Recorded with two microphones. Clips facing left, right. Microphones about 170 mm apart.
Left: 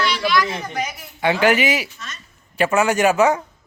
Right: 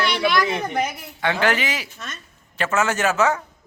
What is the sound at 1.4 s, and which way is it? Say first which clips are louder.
A man's voice: left 7 dB; 10° left (ahead or behind).